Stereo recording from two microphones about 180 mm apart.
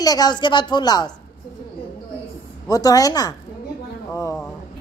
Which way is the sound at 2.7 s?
20° left (ahead or behind).